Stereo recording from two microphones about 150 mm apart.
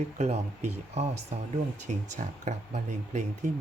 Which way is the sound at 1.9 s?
50° right (ahead or behind).